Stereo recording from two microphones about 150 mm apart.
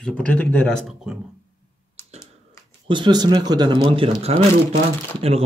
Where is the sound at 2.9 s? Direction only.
30° right (ahead or behind).